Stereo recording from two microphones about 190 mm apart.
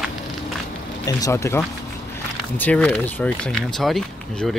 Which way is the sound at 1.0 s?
15° left (ahead or behind).